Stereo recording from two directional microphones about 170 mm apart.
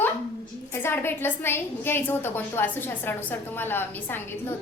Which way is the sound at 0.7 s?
15° left (ahead or behind).